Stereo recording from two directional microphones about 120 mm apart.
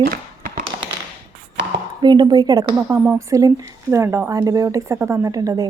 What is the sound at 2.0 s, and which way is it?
Speech, 35° right (ahead or behind).